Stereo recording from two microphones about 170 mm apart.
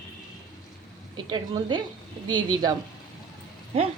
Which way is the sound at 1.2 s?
25° right (ahead or behind).